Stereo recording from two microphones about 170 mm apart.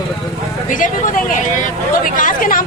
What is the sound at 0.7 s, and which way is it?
A woman's voice, 50° left (ahead or behind).